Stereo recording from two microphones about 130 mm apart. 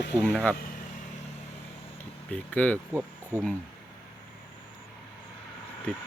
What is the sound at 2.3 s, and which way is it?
Speech, 10° left (ahead or behind).